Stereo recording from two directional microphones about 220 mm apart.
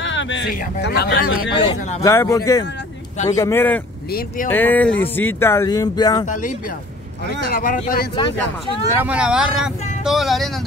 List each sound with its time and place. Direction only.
0.0 s a man's voice: 55° left (ahead or behind)
1.5 s speech: 25° left (ahead or behind)
2.0 s speech: 15° left (ahead or behind)
6.2 s speech: 35° left (ahead or behind)
8.9 s speech: 5° right (ahead or behind)